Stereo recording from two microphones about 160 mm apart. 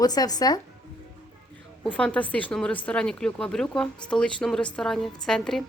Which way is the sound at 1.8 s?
5° left (ahead or behind).